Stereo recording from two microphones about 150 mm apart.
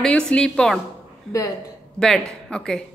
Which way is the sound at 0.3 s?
5° left (ahead or behind).